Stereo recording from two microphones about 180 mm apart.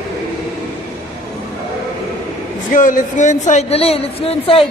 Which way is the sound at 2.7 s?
45° left (ahead or behind).